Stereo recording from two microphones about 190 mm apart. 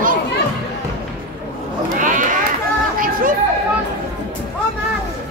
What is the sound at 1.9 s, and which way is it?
Sheep, 45° right (ahead or behind).